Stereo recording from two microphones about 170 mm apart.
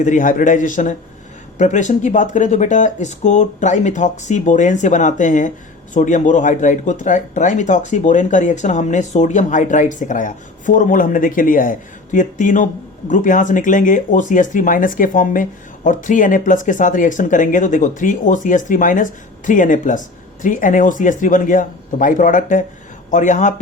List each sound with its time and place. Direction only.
0.0 s speech: 50° left (ahead or behind)